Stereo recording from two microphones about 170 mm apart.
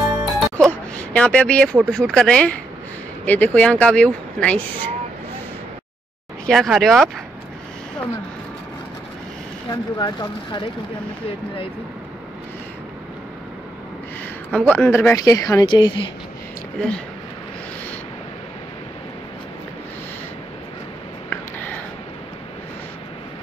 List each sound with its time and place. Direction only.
0.0 s music: centre (ahead or behind)
1.1 s speech: 5° left (ahead or behind)
6.4 s speech: centre (ahead or behind)
9.7 s speech: 25° left (ahead or behind)
14.5 s speech: 5° left (ahead or behind); by 16.0 s 25° left (ahead or behind)
21.3 s a sound: 10° left (ahead or behind)